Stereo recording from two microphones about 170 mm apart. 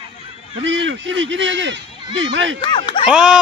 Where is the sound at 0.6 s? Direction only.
90° right.